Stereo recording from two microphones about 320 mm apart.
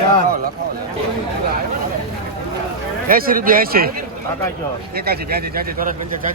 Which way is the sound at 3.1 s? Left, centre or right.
Right.